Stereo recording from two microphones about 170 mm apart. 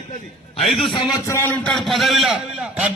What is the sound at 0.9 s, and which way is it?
A man's voice, 20° left (ahead or behind).